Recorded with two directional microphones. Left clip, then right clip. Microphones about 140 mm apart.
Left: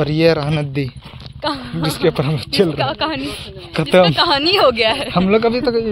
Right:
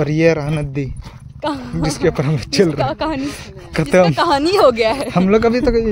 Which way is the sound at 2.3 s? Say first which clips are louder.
Right 1 dB; 60° right (ahead or behind).